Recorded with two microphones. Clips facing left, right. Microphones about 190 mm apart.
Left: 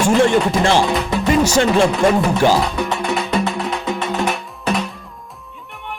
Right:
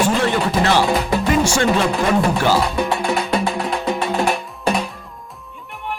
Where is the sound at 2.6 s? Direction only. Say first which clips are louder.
Right 1 dB; centre (ahead or behind).